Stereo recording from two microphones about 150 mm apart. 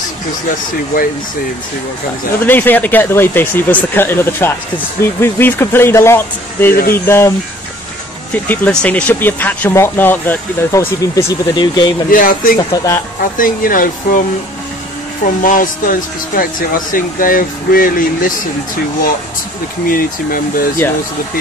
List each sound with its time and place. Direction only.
2.4 s speech: 10° left (ahead or behind)
6.7 s speech: 85° left
7.1 s speech: 15° left (ahead or behind)
12.1 s speech: 70° left (ahead or behind)
12.5 s speech: 25° left (ahead or behind)
13.4 s speech: 65° left (ahead or behind)
15.2 s speech: 65° left (ahead or behind)
19.9 s speech: 70° left (ahead or behind)